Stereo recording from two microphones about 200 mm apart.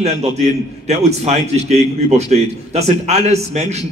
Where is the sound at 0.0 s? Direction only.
30° right (ahead or behind).